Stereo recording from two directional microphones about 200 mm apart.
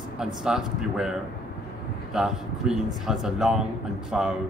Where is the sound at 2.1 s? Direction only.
5° right (ahead or behind).